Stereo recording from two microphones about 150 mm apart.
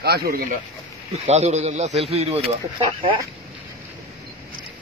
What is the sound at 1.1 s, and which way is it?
Speech, 50° right (ahead or behind).